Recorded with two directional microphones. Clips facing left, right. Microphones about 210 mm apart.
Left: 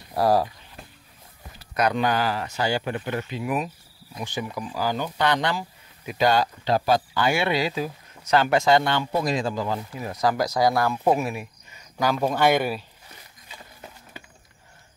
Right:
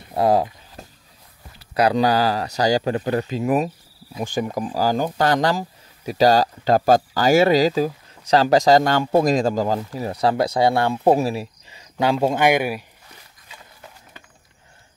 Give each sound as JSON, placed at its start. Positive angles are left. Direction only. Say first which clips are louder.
{"t": 0.1, "sound": "speech", "louder": "right 3 dB", "side_deg": -20}
{"t": 0.8, "sound": "a sound", "louder": "right 4 dB", "side_deg": -45}
{"t": 1.8, "sound": "speech", "louder": "right 5 dB", "side_deg": -35}